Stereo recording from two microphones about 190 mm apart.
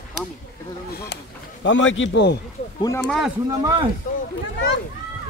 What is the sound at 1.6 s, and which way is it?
Speech, 80° left.